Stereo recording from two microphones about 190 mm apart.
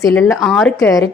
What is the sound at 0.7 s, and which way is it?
Speech, 15° left (ahead or behind).